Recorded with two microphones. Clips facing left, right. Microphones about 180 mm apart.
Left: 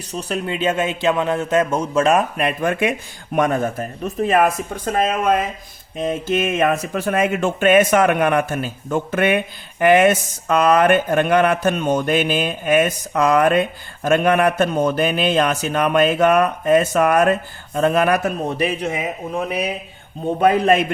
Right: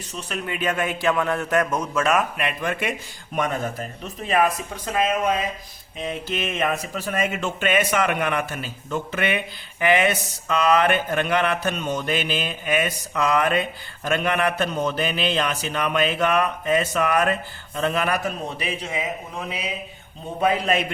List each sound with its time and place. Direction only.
0.1 s a man's voice: 35° left (ahead or behind); by 18.9 s 55° left (ahead or behind)
20.4 s a man's voice: 55° left (ahead or behind)